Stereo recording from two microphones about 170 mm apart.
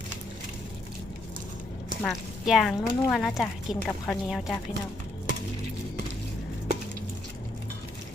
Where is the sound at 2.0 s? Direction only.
Centre (ahead or behind).